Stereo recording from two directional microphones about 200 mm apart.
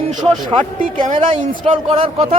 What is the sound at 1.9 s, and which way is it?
Speech, 30° right (ahead or behind).